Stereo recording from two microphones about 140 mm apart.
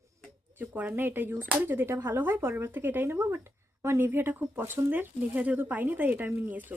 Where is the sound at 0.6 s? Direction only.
10° right (ahead or behind).